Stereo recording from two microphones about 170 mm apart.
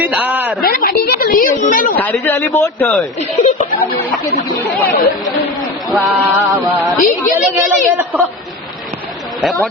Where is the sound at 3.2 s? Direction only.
35° left (ahead or behind).